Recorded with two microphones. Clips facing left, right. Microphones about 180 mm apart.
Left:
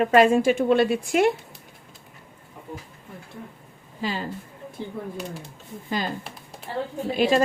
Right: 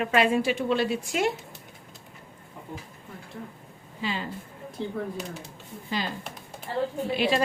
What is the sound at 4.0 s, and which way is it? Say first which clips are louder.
Speech: left 3 dB; 40° left (ahead or behind).